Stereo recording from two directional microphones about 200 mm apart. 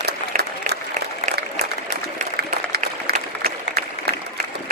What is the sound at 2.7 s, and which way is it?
Applause, 50° right (ahead or behind).